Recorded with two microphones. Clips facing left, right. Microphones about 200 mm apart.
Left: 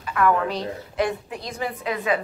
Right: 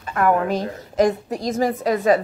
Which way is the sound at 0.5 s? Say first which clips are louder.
Right 4 dB; 45° right (ahead or behind).